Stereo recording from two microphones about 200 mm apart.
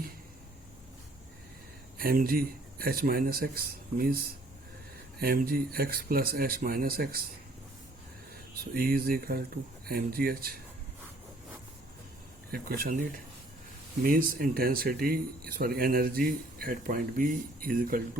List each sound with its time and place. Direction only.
2.0 s speech: 50° right (ahead or behind)
5.2 s speech: 50° right (ahead or behind)
8.6 s speech: 50° right (ahead or behind)
12.5 s speech: 50° right (ahead or behind)
14.0 s speech: 45° right (ahead or behind)